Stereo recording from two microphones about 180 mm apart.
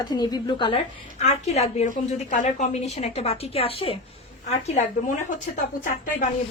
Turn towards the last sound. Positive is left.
turn(degrees=45)  # may be behind; listen again after turning